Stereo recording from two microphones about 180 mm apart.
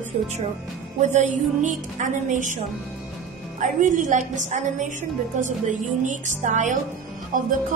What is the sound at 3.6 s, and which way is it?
A woman's voice, 45° right (ahead or behind).